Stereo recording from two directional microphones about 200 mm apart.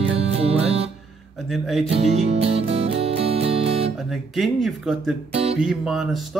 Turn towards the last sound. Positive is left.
turn(degrees=0)  # may be behind; listen again after turning